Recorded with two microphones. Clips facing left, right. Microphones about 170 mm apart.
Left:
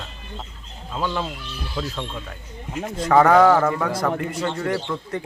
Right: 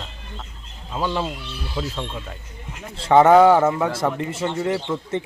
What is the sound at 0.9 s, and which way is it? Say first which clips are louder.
Speech: right 2 dB; 15° right (ahead or behind).